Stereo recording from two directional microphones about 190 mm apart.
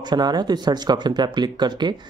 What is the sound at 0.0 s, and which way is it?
Speech, 20° right (ahead or behind).